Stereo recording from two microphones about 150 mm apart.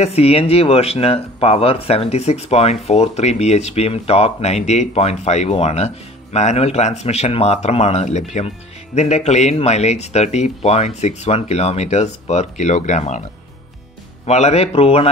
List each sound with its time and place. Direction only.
0.0 s speech: 40° left (ahead or behind)
14.2 s speech: 45° left (ahead or behind)